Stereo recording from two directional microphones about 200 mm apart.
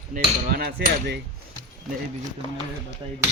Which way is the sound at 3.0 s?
25° right (ahead or behind).